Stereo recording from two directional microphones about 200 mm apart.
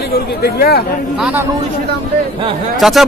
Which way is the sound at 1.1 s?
5° right (ahead or behind).